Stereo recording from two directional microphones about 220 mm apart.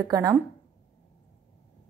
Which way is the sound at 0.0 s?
15° right (ahead or behind).